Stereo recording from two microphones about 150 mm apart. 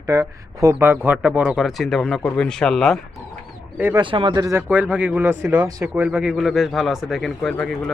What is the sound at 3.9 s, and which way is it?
Speech, 35° right (ahead or behind).